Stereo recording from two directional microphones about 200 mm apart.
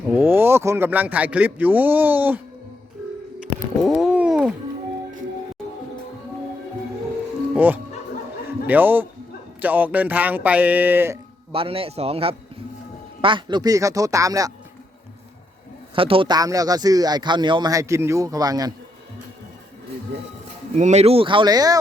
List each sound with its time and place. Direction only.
0.1 s speech: 10° right (ahead or behind)
3.8 s a sound: 5° right (ahead or behind)
7.5 s speech: 10° right (ahead or behind)
11.5 s speech: 30° right (ahead or behind)
16.0 s speech: 25° right (ahead or behind)
20.7 s speech: 35° right (ahead or behind); by 21.8 s 20° right (ahead or behind)